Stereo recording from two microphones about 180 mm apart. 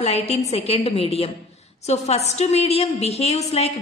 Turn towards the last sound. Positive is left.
turn(degrees=35)  # may be behind; listen again after turning